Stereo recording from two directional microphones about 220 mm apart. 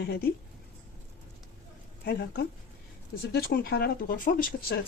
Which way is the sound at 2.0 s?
45° left (ahead or behind).